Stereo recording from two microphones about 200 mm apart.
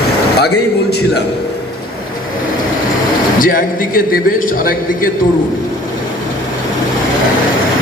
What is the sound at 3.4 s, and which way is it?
A man's voice, 45° left (ahead or behind).